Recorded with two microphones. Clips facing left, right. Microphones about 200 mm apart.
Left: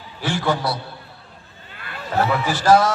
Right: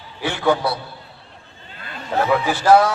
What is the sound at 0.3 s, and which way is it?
Speech, 60° right (ahead or behind).